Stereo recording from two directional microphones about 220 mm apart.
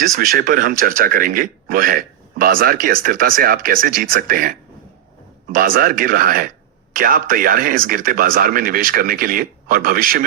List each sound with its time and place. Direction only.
0.0 s speech: 40° right (ahead or behind)